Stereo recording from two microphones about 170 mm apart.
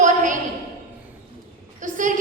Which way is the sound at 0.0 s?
50° right (ahead or behind).